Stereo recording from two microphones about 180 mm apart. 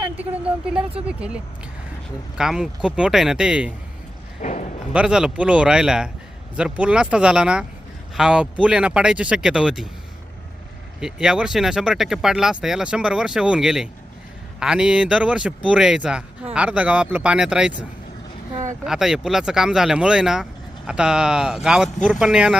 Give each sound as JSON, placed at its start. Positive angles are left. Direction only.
{"t": 0.2, "sound": "speech", "side_deg": -5}
{"t": 4.4, "sound": "a sound", "side_deg": 45}
{"t": 4.9, "sound": "speech", "side_deg": -5}
{"t": 11.0, "sound": "speech", "side_deg": -5}
{"t": 18.9, "sound": "speech", "side_deg": -5}